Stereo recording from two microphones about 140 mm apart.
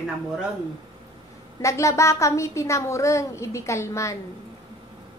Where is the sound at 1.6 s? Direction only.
20° left (ahead or behind).